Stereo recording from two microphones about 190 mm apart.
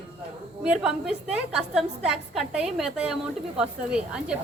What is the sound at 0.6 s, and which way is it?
A woman's voice, 5° right (ahead or behind).